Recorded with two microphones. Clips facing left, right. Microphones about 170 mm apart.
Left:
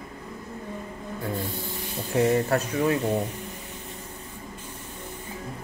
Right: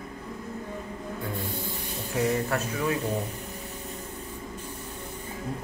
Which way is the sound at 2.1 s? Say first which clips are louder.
Left 5 dB; 35° left (ahead or behind).